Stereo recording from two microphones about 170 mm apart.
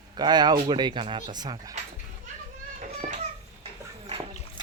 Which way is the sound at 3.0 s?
50° right (ahead or behind).